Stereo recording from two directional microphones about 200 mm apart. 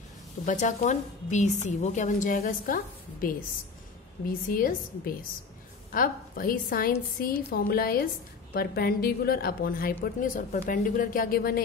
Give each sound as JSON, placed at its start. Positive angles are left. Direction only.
{"t": 0.5, "sound": "a woman's voice", "side_deg": 40}